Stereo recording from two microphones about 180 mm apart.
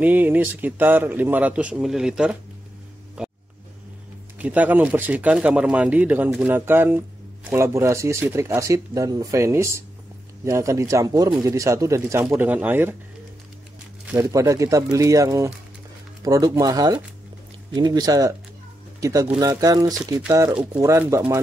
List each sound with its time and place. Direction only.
0.0 s speech: 10° right (ahead or behind)
3.2 s vehicle: 5° right (ahead or behind)
4.4 s speech: 10° right (ahead or behind)
14.1 s speech: 15° right (ahead or behind)